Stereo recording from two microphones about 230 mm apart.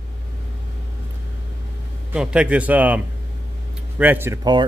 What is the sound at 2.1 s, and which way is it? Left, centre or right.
A man's voice, centre.